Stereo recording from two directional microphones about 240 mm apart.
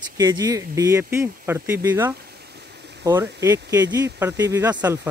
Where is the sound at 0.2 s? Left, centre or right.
Centre.